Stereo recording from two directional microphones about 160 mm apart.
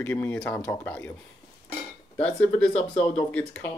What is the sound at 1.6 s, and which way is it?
Dishes, 10° left (ahead or behind).